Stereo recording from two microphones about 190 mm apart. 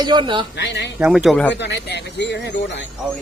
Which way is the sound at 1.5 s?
65° left (ahead or behind).